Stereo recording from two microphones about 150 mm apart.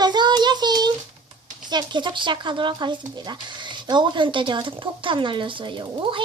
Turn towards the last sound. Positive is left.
turn(degrees=-35)  # may be behind; listen again after turning